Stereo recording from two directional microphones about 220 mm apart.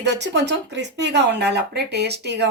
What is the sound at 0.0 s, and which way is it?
Speech, 50° right (ahead or behind).